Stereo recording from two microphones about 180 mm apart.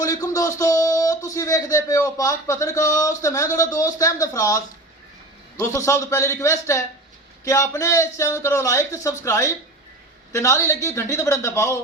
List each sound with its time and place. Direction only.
0.0 s speech: 20° left (ahead or behind)